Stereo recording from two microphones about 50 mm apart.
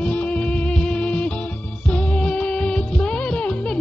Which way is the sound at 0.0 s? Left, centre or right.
Left.